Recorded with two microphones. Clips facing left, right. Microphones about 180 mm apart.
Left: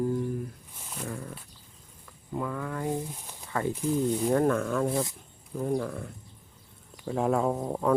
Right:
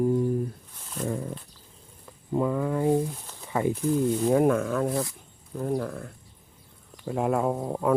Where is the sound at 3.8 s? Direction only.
10° left (ahead or behind).